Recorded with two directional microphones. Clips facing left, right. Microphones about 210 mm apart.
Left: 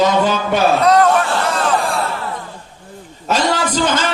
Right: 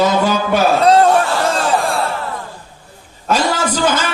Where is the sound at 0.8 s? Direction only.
30° right (ahead or behind).